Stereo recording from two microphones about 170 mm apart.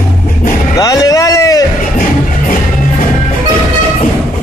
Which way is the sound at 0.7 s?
20° left (ahead or behind).